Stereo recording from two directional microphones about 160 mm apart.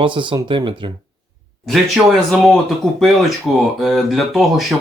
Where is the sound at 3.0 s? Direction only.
Centre (ahead or behind).